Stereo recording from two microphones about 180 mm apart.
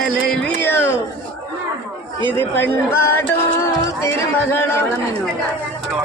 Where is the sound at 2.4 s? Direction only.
10° left (ahead or behind).